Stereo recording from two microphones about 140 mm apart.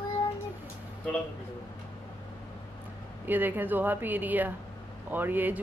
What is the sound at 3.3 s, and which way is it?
Speech, 15° right (ahead or behind).